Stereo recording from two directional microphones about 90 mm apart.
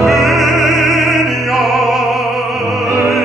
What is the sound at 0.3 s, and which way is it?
Opera, centre (ahead or behind).